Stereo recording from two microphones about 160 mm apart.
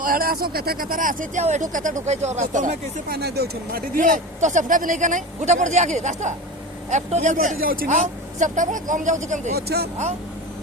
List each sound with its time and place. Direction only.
0.0 s speech: 65° right (ahead or behind)
3.2 s speech: 85° right; by 9.6 s 50° right (ahead or behind)
9.6 s speech: 85° right